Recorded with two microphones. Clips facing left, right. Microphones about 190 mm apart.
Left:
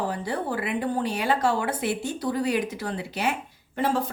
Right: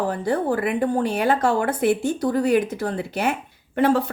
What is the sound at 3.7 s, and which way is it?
Speech, 65° right (ahead or behind).